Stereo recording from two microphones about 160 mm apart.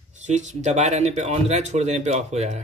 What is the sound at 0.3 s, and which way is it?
Speech, 50° right (ahead or behind).